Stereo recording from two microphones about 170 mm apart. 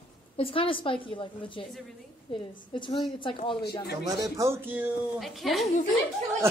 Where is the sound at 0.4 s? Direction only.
30° left (ahead or behind).